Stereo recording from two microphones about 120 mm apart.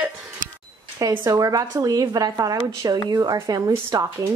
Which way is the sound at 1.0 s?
30° right (ahead or behind).